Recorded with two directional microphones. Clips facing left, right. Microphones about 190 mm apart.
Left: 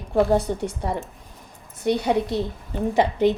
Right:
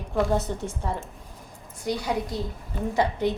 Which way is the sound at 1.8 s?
65° left (ahead or behind).